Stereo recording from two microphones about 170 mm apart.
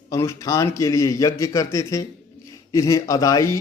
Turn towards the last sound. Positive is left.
turn(degrees=20)  # may be behind; listen again after turning